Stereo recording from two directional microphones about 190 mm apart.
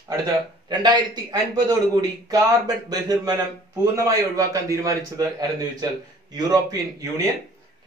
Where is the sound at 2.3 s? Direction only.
20° right (ahead or behind).